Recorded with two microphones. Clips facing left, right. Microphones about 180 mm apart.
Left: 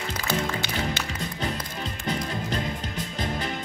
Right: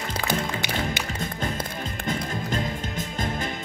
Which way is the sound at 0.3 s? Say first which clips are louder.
Left 1 dB; 15° right (ahead or behind).